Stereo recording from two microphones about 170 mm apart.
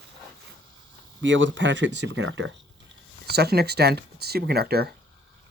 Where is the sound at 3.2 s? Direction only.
70° right (ahead or behind).